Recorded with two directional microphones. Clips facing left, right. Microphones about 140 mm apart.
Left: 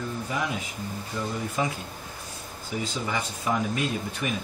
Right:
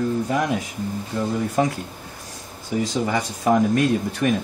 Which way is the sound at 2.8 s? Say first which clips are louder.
Right 8 dB; 45° right (ahead or behind).